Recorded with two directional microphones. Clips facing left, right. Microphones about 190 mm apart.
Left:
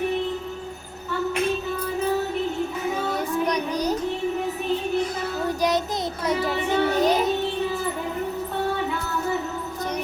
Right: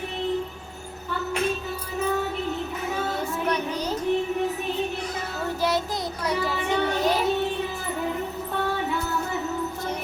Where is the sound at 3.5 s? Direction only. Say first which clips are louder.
Left 2 dB; 15° left (ahead or behind).